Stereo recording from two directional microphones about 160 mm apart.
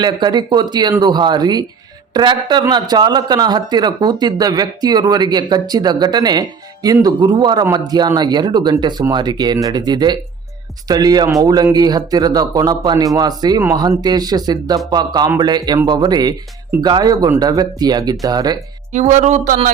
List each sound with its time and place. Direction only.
0.0 s speech: 30° right (ahead or behind)
18.9 s speech: 50° right (ahead or behind)